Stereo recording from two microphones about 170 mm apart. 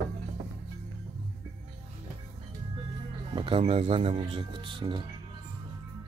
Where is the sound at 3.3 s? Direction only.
30° right (ahead or behind).